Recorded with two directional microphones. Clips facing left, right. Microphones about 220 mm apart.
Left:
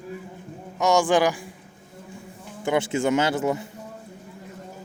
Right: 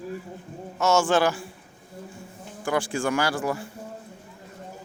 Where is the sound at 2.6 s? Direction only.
20° left (ahead or behind).